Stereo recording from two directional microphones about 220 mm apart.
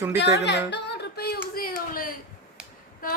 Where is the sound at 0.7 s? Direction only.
50° left (ahead or behind).